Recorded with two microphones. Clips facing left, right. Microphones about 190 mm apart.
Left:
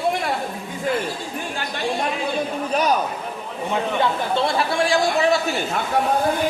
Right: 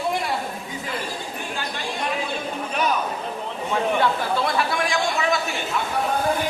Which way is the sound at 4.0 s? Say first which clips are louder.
Left 1 dB; 25° left (ahead or behind).